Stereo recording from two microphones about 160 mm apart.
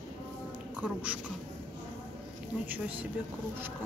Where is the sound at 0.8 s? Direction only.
10° right (ahead or behind).